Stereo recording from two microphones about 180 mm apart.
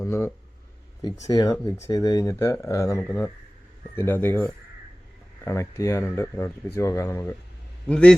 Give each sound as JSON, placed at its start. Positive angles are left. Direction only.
{"t": 0.0, "sound": "a man's voice", "side_deg": 15}